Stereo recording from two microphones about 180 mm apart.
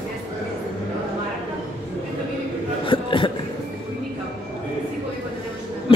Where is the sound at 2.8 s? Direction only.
30° left (ahead or behind).